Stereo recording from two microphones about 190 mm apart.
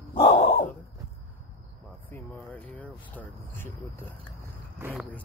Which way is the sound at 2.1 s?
10° left (ahead or behind).